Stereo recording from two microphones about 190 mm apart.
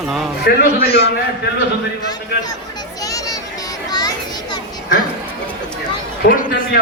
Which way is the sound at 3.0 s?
20° left (ahead or behind).